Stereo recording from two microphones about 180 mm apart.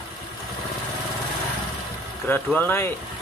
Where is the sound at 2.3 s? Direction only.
10° left (ahead or behind).